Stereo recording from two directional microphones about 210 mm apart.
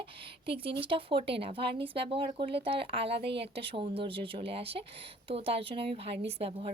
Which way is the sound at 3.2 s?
55° right (ahead or behind).